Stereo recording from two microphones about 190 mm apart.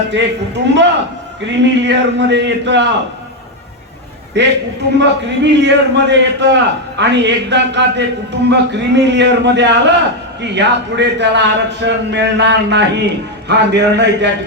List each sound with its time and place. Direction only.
0.7 s a man's voice: 70° right (ahead or behind)
4.4 s a man's voice: 65° right (ahead or behind)